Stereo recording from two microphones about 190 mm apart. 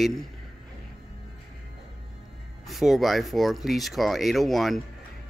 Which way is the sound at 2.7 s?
Centre (ahead or behind).